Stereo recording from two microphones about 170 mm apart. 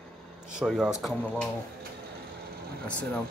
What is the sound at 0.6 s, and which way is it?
Speech, 5° right (ahead or behind).